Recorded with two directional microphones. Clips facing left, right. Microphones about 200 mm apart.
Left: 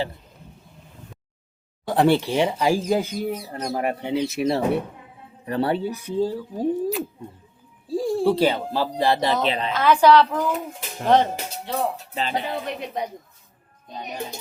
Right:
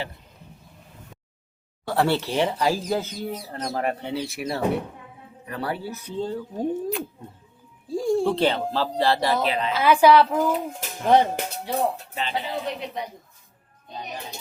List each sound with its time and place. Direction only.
1.9 s speech: 15° left (ahead or behind)
6.1 s speech: 5° left (ahead or behind)
9.5 s a woman's voice: 30° left (ahead or behind)
9.7 s a woman's voice: 10° right (ahead or behind)
12.2 s speech: 50° left (ahead or behind)